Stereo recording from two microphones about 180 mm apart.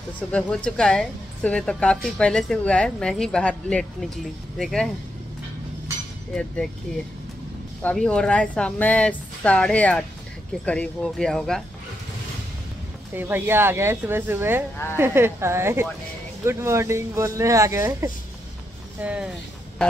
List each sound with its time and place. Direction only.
0.3 s speech: 5° left (ahead or behind)
6.3 s speech: 5° left (ahead or behind)
7.8 s speech: 5° left (ahead or behind)
13.1 s speech: 10° right (ahead or behind)
18.9 s speech: 5° right (ahead or behind)